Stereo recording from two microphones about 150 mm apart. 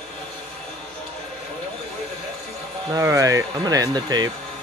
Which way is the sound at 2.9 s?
20° right (ahead or behind).